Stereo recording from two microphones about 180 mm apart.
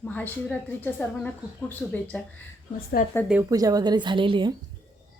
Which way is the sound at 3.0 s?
50° left (ahead or behind).